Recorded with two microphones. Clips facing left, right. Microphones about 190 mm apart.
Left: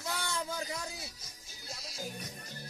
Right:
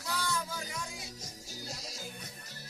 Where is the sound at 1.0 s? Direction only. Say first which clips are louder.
Right 6 dB; 40° right (ahead or behind).